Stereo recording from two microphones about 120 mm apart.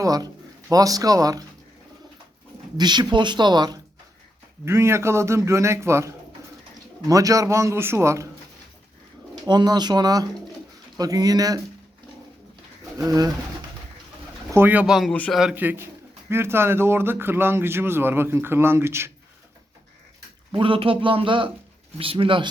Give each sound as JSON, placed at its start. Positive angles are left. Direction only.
{"t": 0.0, "sound": "speech", "side_deg": -30}
{"t": 2.7, "sound": "speech", "side_deg": -35}
{"t": 4.6, "sound": "speech", "side_deg": -20}
{"t": 9.3, "sound": "speech", "side_deg": -35}
{"t": 13.1, "sound": "speech", "side_deg": -30}
{"t": 14.5, "sound": "a man's voice", "side_deg": -15}
{"t": 15.5, "sound": "speech", "side_deg": -15}
{"t": 20.5, "sound": "speech", "side_deg": -45}